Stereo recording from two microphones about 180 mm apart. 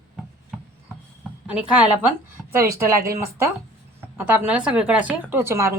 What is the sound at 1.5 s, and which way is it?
A woman's voice, 5° right (ahead or behind).